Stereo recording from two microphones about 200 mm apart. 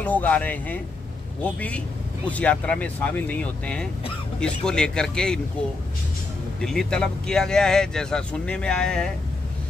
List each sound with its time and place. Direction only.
0.0 s speech: 5° left (ahead or behind)
6.6 s speech: 5° left (ahead or behind)